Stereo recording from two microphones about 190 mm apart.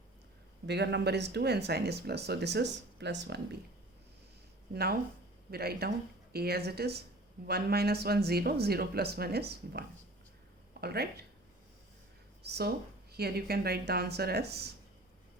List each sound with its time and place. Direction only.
0.7 s speech: 65° right (ahead or behind)
4.7 s speech: 55° right (ahead or behind)
12.4 s speech: 60° right (ahead or behind)